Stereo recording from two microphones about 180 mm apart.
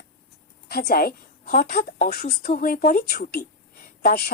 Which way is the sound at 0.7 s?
60° left (ahead or behind).